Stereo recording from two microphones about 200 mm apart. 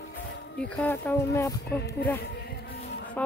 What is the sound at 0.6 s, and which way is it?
Speech, 5° left (ahead or behind).